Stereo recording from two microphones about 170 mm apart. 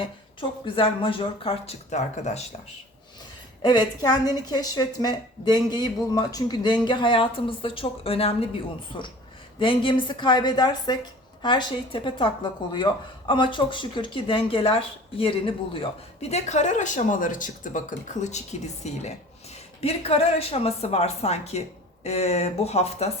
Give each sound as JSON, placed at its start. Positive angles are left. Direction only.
{"t": 0.3, "sound": "speech", "side_deg": 30}
{"t": 3.6, "sound": "a woman's voice", "side_deg": 25}
{"t": 16.3, "sound": "speech", "side_deg": 45}